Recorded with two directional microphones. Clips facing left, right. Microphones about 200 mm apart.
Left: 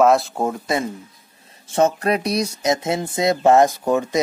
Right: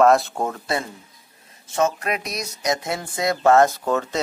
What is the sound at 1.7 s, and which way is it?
Speech, 30° left (ahead or behind).